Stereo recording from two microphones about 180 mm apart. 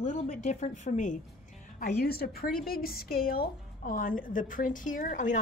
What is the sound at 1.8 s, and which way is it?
A woman's voice, 55° left (ahead or behind).